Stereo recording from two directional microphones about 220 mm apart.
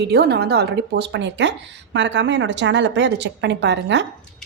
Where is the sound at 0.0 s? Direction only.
50° right (ahead or behind).